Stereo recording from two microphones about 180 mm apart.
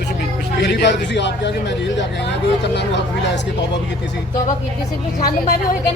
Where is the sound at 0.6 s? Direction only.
70° left (ahead or behind).